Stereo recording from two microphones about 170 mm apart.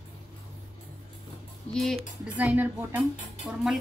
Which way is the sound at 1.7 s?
Centre (ahead or behind).